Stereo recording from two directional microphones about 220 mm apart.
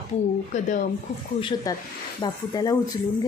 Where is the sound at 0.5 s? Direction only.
30° left (ahead or behind).